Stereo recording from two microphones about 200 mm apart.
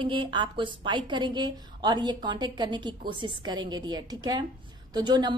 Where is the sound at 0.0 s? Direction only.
25° right (ahead or behind).